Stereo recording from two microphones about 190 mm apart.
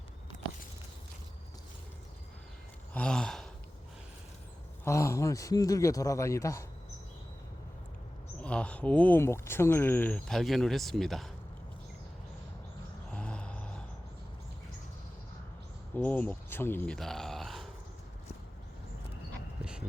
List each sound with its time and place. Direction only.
2.9 s gasp: 5° left (ahead or behind)
4.9 s speech: 15° left (ahead or behind)
8.4 s speech: 5° left (ahead or behind)
13.1 s vehicle: 5° left (ahead or behind)
16.0 s grunt: 10° left (ahead or behind)